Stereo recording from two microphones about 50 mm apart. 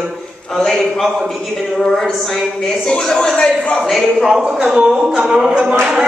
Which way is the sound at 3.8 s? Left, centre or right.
Centre.